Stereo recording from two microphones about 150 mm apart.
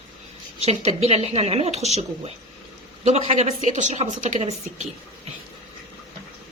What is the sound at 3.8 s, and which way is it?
Speech, 55° right (ahead or behind).